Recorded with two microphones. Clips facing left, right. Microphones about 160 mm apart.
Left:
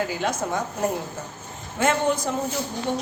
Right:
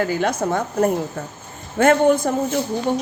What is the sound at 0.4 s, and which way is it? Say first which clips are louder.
Speech: right 6 dB; 50° right (ahead or behind).